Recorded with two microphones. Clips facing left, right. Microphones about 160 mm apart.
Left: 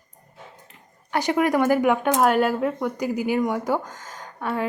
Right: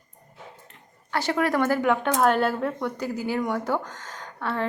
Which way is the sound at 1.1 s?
15° left (ahead or behind).